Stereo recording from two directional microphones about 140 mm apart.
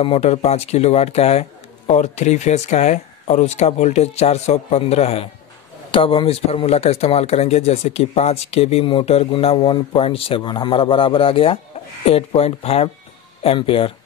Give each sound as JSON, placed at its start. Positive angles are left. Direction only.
{"t": 0.0, "sound": "speech", "side_deg": 45}